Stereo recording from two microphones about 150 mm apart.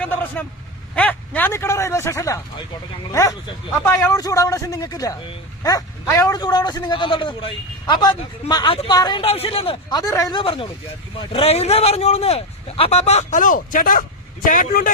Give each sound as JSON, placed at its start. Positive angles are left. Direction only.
{"t": 0.0, "sound": "a man's voice", "side_deg": 10}
{"t": 9.2, "sound": "a man's voice", "side_deg": 40}
{"t": 10.0, "sound": "a man's voice", "side_deg": 25}
{"t": 10.4, "sound": "a man's voice", "side_deg": 35}